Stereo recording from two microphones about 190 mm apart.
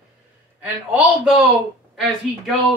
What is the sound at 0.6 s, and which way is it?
Speech, 5° right (ahead or behind).